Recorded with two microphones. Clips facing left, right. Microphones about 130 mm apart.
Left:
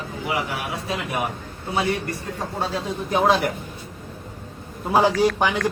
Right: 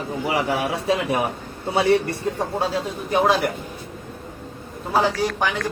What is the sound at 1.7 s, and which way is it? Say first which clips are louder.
Speech: right 5 dB; 30° right (ahead or behind).